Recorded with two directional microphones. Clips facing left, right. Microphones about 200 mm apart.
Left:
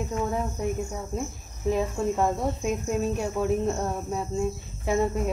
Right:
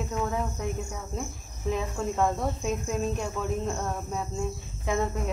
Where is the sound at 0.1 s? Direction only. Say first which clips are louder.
Left 1 dB; 15° left (ahead or behind).